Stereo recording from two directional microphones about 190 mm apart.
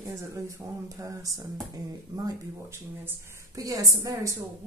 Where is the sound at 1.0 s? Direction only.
15° right (ahead or behind).